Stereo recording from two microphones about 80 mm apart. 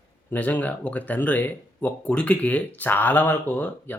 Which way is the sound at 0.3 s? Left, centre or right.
Left.